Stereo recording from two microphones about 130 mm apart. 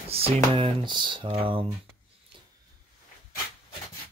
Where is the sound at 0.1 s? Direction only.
50° right (ahead or behind).